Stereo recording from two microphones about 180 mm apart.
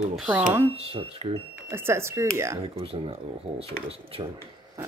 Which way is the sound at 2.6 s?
30° right (ahead or behind).